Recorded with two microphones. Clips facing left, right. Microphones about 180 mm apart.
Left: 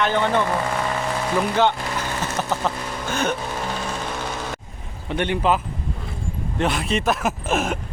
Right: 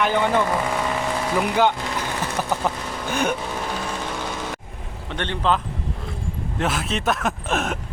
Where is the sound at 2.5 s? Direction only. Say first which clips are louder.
Even; 15° right (ahead or behind).